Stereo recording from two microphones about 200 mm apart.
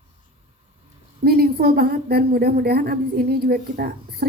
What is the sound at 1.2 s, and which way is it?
A woman's voice, 50° right (ahead or behind).